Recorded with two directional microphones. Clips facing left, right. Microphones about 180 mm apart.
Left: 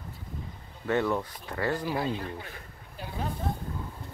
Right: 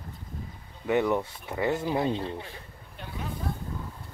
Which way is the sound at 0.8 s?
15° right (ahead or behind).